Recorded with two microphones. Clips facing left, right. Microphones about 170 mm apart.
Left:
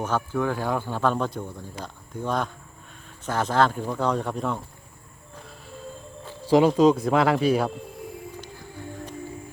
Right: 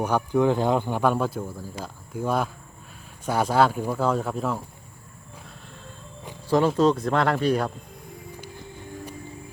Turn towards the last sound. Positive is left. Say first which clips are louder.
# left 2 dB
turn(degrees=5)  # may be behind; listen again after turning